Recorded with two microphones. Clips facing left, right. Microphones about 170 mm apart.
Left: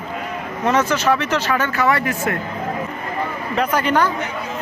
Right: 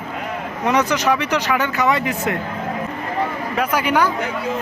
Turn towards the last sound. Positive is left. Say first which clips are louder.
# even
turn(degrees=-10)  # may be behind; listen again after turning